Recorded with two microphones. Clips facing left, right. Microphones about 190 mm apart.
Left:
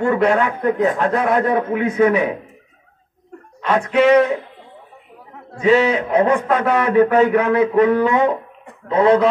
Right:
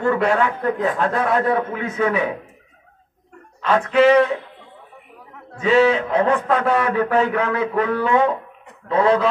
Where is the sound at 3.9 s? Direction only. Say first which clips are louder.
Left 1 dB; centre (ahead or behind).